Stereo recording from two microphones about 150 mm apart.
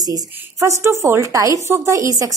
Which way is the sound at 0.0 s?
25° right (ahead or behind).